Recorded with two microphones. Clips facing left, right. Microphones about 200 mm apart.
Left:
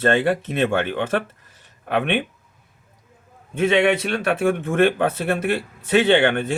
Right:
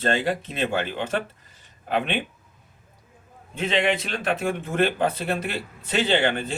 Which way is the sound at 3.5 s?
55° left (ahead or behind).